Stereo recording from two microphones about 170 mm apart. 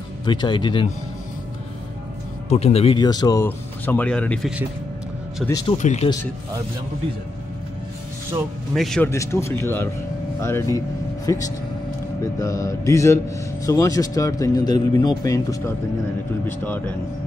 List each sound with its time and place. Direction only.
0.2 s speech: 25° left (ahead or behind)
2.5 s speech: 35° left (ahead or behind)
3.0 s speech: 25° left (ahead or behind)
3.4 s speech: 10° left (ahead or behind)
5.5 s speech: 25° left (ahead or behind)
5.8 s speech: 45° left (ahead or behind)
8.7 s speech: 5° left (ahead or behind)
9.1 s speech: 15° left (ahead or behind)